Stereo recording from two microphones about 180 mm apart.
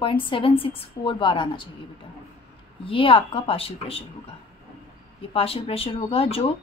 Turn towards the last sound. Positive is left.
turn(degrees=30)  # may be behind; listen again after turning